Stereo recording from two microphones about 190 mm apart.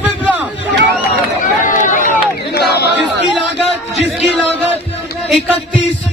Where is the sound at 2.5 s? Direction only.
60° left (ahead or behind).